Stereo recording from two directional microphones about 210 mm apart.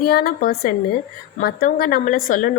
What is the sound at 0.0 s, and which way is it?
A woman's voice, 45° left (ahead or behind).